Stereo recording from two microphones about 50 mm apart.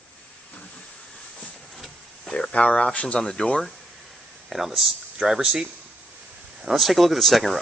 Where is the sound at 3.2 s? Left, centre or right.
Centre.